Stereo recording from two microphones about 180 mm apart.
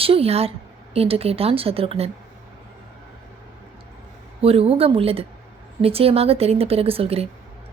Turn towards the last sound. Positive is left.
turn(degrees=-35)  # may be behind; listen again after turning